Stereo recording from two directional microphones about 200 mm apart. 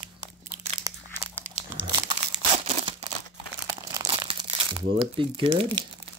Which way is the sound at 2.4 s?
30° right (ahead or behind).